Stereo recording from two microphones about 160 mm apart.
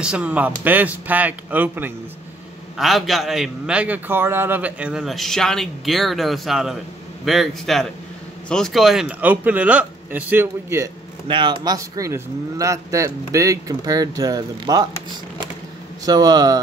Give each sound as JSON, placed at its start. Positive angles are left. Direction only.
{"t": 0.0, "sound": "a man's voice", "side_deg": -5}
{"t": 2.8, "sound": "a man's voice", "side_deg": 0}
{"t": 11.2, "sound": "a man's voice", "side_deg": -30}
{"t": 16.1, "sound": "a man's voice", "side_deg": -25}